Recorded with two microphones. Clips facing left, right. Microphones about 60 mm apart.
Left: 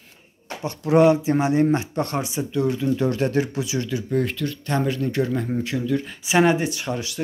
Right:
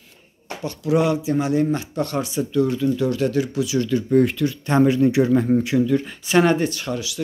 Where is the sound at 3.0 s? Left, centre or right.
Left.